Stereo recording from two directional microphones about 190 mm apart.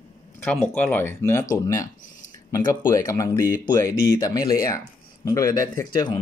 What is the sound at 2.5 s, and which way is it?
Speech, 15° left (ahead or behind).